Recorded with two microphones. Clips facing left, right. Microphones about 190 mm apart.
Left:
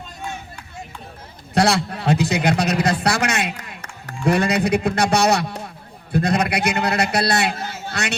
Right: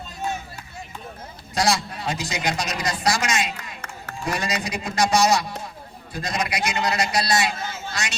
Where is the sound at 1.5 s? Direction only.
60° left (ahead or behind).